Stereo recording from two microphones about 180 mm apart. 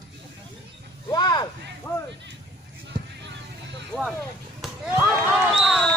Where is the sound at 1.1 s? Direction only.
20° left (ahead or behind).